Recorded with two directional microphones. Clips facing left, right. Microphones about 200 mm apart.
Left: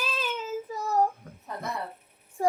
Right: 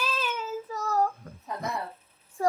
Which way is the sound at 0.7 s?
15° left (ahead or behind).